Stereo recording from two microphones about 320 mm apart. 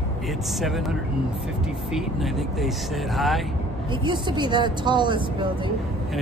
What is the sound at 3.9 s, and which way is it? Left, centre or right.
Speech, centre.